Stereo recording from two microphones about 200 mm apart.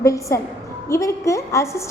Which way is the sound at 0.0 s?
15° left (ahead or behind).